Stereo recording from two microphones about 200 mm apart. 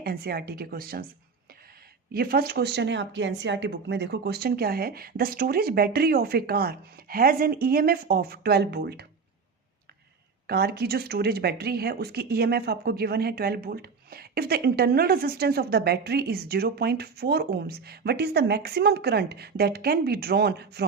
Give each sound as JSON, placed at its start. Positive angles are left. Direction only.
{"t": 0.0, "sound": "speech", "side_deg": -50}
{"t": 2.1, "sound": "speech", "side_deg": -50}
{"t": 10.4, "sound": "speech", "side_deg": -50}